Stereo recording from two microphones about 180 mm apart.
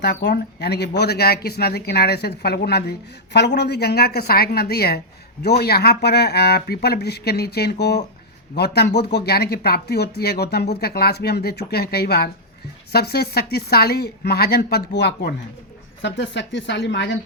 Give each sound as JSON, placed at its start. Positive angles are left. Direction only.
{"t": 0.0, "sound": "speech", "side_deg": 65}
{"t": 16.0, "sound": "a woman's voice", "side_deg": 80}